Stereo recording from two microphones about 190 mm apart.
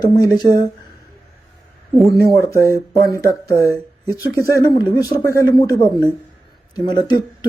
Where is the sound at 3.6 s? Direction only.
15° right (ahead or behind).